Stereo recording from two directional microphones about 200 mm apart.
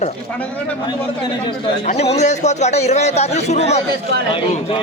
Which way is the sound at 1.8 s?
35° left (ahead or behind).